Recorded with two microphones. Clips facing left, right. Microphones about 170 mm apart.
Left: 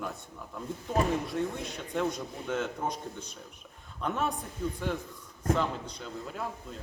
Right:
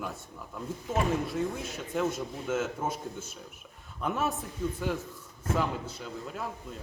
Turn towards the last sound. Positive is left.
turn(degrees=0)  # may be behind; listen again after turning